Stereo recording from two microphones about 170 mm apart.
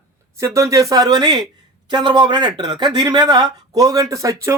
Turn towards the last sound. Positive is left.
turn(degrees=-15)  # may be behind; listen again after turning